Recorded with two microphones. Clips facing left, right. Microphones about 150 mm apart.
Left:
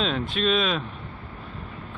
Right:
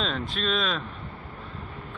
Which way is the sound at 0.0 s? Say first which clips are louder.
Left 4 dB; centre (ahead or behind).